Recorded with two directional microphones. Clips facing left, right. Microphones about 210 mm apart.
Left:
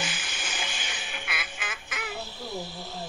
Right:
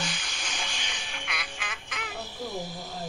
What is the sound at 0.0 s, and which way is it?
Music, 5° left (ahead or behind).